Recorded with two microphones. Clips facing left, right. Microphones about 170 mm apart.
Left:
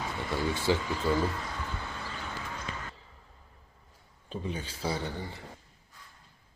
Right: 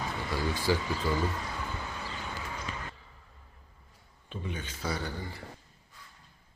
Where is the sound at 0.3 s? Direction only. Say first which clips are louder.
Left 1 dB; 25° left (ahead or behind).